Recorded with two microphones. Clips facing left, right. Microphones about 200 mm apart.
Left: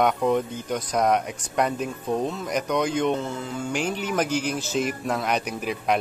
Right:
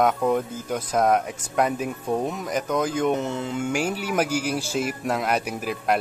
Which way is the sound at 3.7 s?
10° right (ahead or behind).